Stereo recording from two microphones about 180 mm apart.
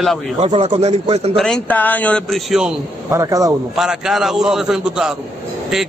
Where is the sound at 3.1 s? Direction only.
20° right (ahead or behind).